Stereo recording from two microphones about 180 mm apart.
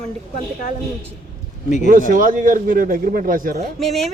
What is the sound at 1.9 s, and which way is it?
Speech, 50° right (ahead or behind).